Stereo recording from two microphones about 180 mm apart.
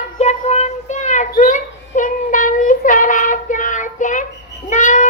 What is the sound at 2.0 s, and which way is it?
Child singing, 50° left (ahead or behind).